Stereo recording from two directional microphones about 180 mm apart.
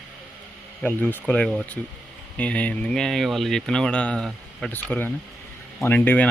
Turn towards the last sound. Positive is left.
turn(degrees=10)  # may be behind; listen again after turning